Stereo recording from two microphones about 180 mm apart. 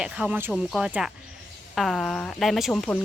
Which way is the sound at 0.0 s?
5° right (ahead or behind).